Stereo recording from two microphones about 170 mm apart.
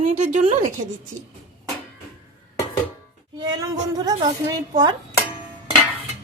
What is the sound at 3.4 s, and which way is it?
A woman's voice, 20° right (ahead or behind).